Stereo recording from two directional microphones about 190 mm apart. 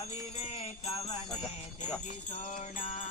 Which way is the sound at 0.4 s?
35° left (ahead or behind).